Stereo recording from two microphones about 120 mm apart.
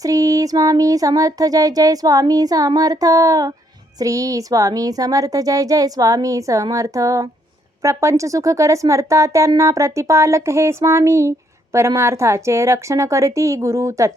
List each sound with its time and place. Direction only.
0.0 s speech: 30° right (ahead or behind)